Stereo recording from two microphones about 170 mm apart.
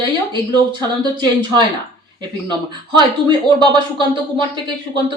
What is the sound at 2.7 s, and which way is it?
Speech, 25° right (ahead or behind).